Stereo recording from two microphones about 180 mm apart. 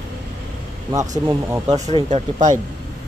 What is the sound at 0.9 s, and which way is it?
Speech, 20° right (ahead or behind).